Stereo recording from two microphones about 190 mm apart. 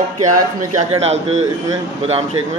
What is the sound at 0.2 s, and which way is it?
Speech, 40° right (ahead or behind).